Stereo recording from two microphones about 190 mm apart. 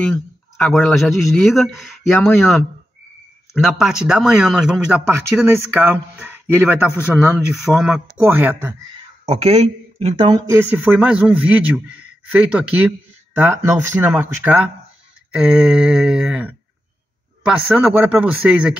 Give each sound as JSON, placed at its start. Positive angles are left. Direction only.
{"t": 0.6, "sound": "speech", "side_deg": 5}
{"t": 9.2, "sound": "speech", "side_deg": -35}
{"t": 10.5, "sound": "speech", "side_deg": -10}